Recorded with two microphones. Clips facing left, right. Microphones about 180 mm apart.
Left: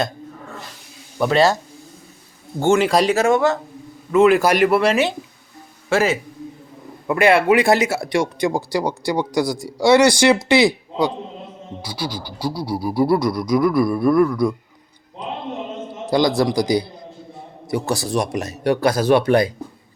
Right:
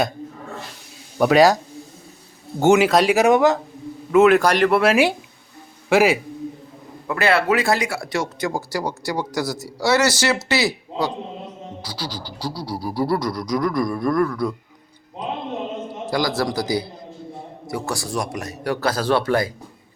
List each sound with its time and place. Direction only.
1.2 s speech: 10° right (ahead or behind)
2.6 s a man's voice: 5° right (ahead or behind)
3.2 s speech: 15° right (ahead or behind)
4.1 s a man's voice: centre (ahead or behind)
4.8 s speech: 10° right (ahead or behind)
7.1 s a sound: 15° left (ahead or behind)
11.9 s a sound: 10° left (ahead or behind)
16.0 s speech: 20° left (ahead or behind)